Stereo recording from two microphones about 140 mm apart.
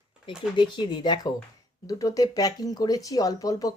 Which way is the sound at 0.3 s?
35° left (ahead or behind).